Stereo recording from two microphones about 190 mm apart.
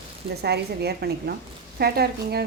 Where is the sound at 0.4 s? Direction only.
60° right (ahead or behind).